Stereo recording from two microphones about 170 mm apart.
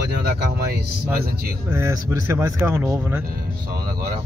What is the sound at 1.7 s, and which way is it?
Speech, 15° right (ahead or behind).